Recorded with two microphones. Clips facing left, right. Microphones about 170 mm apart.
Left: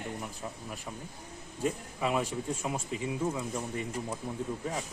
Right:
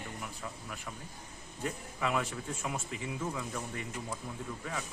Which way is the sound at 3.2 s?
25° left (ahead or behind).